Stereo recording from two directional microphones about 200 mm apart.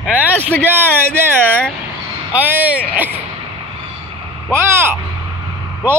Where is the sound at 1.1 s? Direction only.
5° left (ahead or behind).